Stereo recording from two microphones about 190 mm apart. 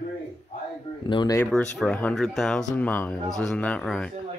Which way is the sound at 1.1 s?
25° left (ahead or behind).